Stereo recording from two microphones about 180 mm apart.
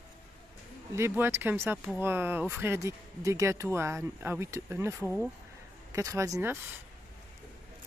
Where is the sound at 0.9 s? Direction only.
15° right (ahead or behind).